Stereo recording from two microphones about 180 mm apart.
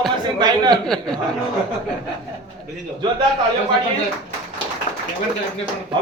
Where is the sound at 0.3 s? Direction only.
25° right (ahead or behind).